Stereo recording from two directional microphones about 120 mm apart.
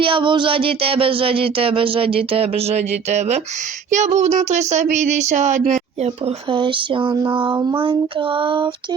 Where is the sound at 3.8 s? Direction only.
80° right.